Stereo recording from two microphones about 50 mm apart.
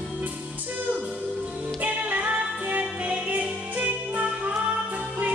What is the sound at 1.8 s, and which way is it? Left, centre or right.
Music, right.